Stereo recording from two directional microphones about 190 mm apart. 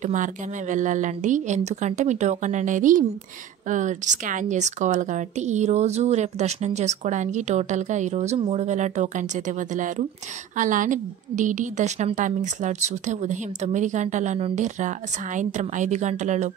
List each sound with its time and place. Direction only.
0.0 s speech: 40° right (ahead or behind)
10.6 s speech: 45° right (ahead or behind)